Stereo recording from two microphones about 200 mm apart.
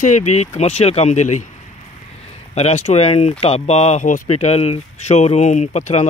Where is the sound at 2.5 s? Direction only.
30° left (ahead or behind).